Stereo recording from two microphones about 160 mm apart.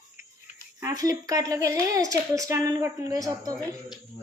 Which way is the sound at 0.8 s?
20° right (ahead or behind).